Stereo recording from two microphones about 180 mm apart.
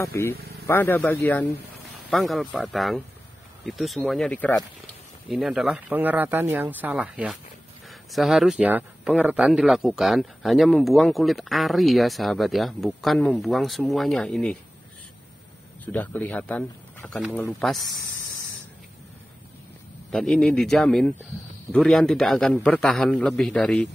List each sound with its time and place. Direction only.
0.0 s speech: 15° left (ahead or behind)
2.0 s speech: centre (ahead or behind)
15.8 s speech: 10° left (ahead or behind)
20.1 s speech: centre (ahead or behind)